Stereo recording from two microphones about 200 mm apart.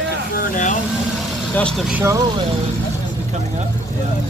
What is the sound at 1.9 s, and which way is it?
Speech, 10° right (ahead or behind).